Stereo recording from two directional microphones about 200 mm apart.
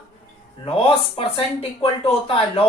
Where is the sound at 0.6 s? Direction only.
25° left (ahead or behind).